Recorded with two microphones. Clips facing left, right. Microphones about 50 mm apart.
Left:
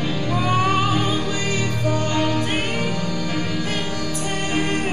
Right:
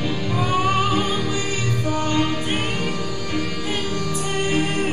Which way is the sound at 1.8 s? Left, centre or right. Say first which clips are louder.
Even; centre.